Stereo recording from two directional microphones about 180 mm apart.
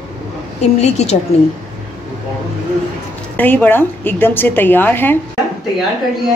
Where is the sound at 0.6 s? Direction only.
35° left (ahead or behind).